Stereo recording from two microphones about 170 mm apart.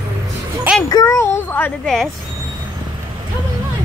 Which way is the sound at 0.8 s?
20° left (ahead or behind).